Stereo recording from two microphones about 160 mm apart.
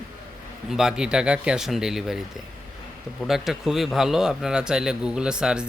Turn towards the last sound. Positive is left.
turn(degrees=-5)  # may be behind; listen again after turning